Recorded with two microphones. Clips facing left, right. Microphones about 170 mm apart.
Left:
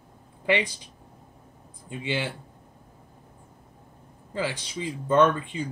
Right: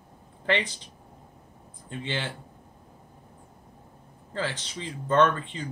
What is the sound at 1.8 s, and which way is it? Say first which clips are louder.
Speech: left 3 dB; 10° left (ahead or behind).